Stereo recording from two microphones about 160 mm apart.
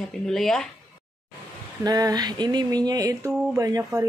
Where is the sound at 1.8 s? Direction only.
25° right (ahead or behind).